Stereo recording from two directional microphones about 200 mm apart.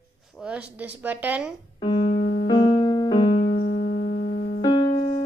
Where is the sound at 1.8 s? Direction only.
30° left (ahead or behind).